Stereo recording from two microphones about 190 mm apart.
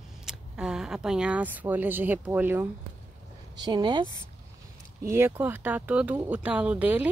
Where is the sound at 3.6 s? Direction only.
25° right (ahead or behind).